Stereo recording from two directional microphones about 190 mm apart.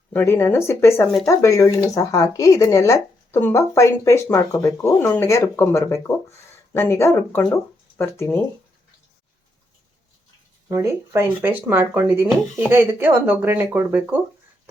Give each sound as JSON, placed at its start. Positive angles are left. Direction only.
{"t": 0.1, "sound": "speech", "side_deg": 10}
{"t": 10.7, "sound": "speech", "side_deg": -15}